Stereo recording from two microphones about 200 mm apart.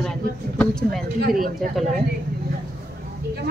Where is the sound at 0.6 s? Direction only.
Centre (ahead or behind).